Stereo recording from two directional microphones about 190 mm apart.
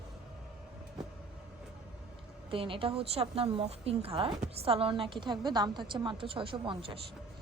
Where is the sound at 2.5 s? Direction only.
25° right (ahead or behind).